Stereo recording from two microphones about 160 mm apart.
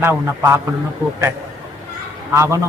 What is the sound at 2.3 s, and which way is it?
Speech, 20° right (ahead or behind).